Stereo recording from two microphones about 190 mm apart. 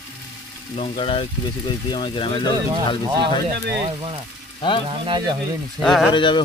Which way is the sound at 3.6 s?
60° right (ahead or behind).